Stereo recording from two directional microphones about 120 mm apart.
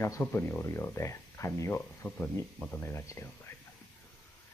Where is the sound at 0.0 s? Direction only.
25° left (ahead or behind).